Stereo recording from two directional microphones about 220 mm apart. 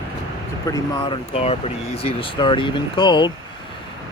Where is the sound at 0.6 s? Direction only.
15° left (ahead or behind).